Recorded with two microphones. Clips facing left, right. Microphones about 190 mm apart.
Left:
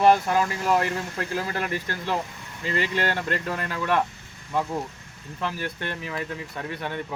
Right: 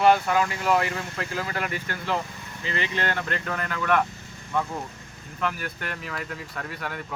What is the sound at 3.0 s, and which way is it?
Speech, 30° left (ahead or behind).